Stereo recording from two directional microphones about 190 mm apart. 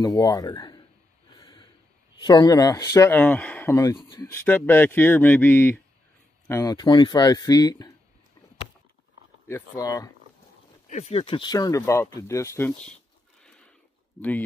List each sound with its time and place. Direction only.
0.0 s speech: 20° left (ahead or behind)
1.4 s a sound: 25° left (ahead or behind)
2.1 s speech: 20° left (ahead or behind)
4.3 s speech: 10° left (ahead or behind)
6.6 s speech: 20° left (ahead or behind)
9.5 s speech: 15° left (ahead or behind)
10.9 s speech: 35° left (ahead or behind); by 12.9 s 10° left (ahead or behind)